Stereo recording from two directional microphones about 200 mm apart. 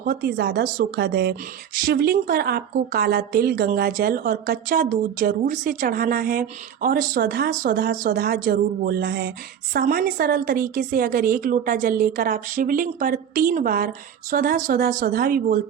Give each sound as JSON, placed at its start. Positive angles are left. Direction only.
{"t": 0.0, "sound": "a woman's voice", "side_deg": -50}